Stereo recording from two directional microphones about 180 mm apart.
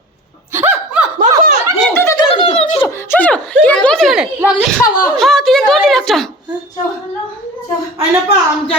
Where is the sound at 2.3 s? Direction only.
35° left (ahead or behind).